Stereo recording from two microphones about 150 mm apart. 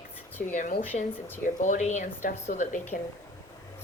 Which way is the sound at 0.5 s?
60° left (ahead or behind).